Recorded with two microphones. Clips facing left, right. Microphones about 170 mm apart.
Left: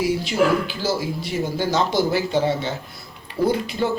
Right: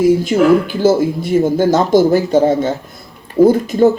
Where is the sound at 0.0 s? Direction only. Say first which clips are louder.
Right 9 dB; 50° right (ahead or behind).